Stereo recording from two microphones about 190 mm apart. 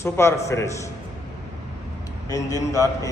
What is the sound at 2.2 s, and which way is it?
Speech, 15° left (ahead or behind).